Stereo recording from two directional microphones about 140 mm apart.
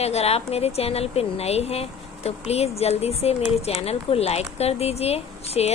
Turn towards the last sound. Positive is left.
turn(degrees=45)  # may be behind; listen again after turning